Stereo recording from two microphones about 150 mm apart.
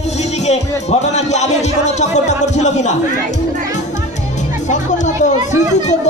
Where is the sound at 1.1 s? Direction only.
50° left (ahead or behind).